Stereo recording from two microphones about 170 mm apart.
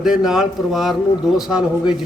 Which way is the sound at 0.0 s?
5° right (ahead or behind).